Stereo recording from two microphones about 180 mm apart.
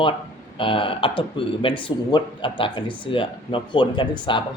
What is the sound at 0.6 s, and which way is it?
Speech, 30° left (ahead or behind).